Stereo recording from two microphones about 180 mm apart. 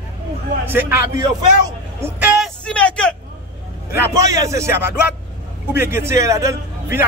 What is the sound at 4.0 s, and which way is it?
A man's voice, 15° right (ahead or behind).